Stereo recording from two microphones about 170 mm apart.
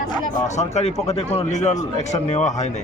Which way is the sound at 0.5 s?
40° left (ahead or behind).